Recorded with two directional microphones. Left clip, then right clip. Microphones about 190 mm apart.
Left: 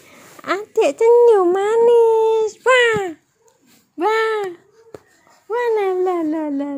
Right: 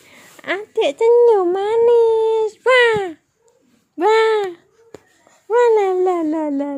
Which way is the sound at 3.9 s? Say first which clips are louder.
Right 4 dB; 20° right (ahead or behind).